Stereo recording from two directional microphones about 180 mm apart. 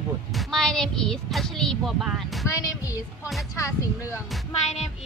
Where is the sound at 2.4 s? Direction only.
20° left (ahead or behind).